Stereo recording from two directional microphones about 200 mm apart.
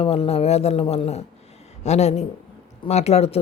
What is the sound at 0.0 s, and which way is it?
A woman's voice, 30° left (ahead or behind).